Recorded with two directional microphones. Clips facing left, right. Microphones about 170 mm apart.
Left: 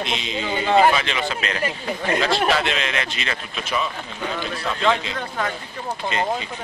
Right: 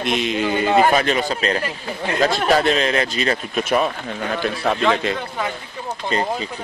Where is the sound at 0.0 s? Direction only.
55° right (ahead or behind).